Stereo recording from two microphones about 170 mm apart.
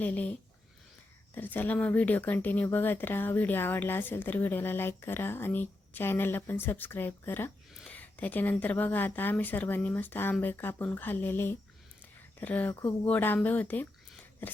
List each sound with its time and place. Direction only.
0.0 s speech: 10° left (ahead or behind)
1.4 s speech: 10° left (ahead or behind)